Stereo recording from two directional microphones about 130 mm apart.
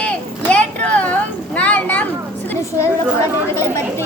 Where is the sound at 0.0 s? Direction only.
10° left (ahead or behind).